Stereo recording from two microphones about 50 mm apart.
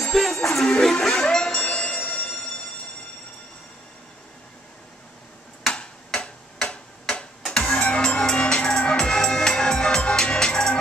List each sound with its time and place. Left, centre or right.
0.0 s music: centre
5.7 s tick-tock: centre